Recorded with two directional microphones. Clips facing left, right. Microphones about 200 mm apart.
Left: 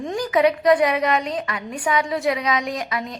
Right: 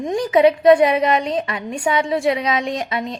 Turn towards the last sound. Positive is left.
turn(degrees=-25)  # may be behind; listen again after turning